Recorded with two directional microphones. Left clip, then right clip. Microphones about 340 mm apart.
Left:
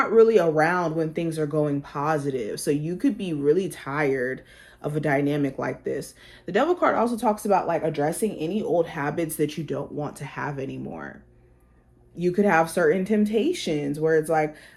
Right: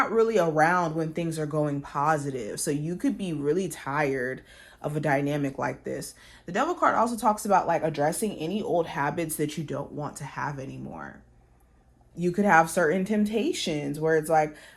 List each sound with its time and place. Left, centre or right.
0.0 s speech: right
5.9 s speech: centre
7.2 s speech: right
10.1 s speech: centre
12.2 s speech: right